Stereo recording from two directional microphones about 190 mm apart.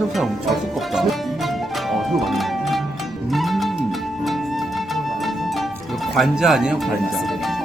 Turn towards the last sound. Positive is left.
turn(degrees=0)  # may be behind; listen again after turning